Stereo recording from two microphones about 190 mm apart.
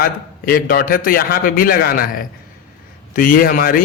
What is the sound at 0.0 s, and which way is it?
Speech, 50° left (ahead or behind).